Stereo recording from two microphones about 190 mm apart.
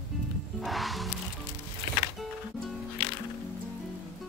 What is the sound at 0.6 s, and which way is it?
Music, centre (ahead or behind).